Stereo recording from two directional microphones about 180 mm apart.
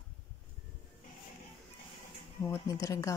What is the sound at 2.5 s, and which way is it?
Speech, 15° left (ahead or behind).